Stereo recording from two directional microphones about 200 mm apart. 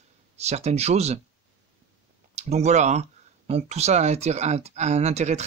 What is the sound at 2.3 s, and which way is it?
Speech, 35° right (ahead or behind).